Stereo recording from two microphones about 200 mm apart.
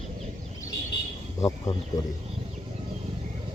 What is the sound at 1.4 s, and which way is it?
Speech, 15° left (ahead or behind).